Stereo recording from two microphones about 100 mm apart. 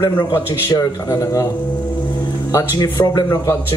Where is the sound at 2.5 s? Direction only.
30° left (ahead or behind).